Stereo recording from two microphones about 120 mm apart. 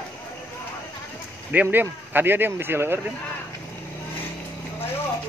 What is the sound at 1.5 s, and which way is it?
Speech, 15° right (ahead or behind).